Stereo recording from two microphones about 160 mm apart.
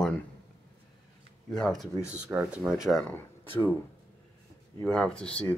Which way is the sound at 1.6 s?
5° left (ahead or behind).